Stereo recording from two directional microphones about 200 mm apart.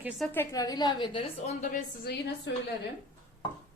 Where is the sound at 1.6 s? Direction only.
40° left (ahead or behind).